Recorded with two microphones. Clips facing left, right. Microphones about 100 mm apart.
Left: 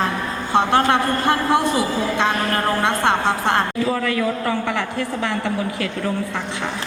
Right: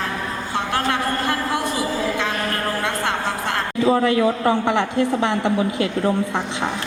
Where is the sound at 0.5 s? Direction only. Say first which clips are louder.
Left 7 dB; 30° left (ahead or behind).